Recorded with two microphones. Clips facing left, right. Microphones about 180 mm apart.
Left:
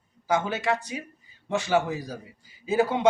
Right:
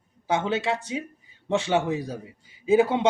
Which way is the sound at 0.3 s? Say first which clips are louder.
Right 1 dB; 25° right (ahead or behind).